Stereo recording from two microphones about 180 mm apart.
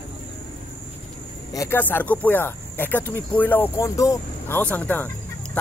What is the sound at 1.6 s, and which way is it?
Speech, 10° left (ahead or behind).